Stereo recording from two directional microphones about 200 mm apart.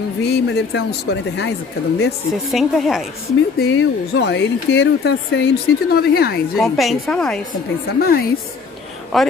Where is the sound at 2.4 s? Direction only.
Centre (ahead or behind).